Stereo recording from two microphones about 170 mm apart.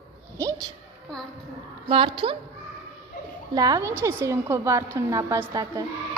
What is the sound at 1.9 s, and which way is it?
Speech, 30° right (ahead or behind).